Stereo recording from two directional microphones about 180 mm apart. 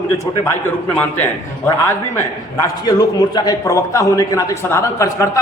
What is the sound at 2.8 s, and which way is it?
A man's voice, 20° left (ahead or behind).